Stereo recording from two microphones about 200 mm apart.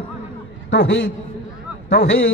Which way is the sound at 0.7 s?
60° left (ahead or behind).